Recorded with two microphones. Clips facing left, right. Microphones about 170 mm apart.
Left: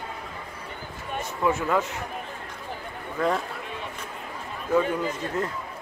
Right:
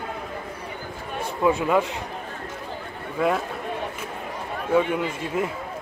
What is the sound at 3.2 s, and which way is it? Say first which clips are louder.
Speech: right 2 dB; 10° right (ahead or behind).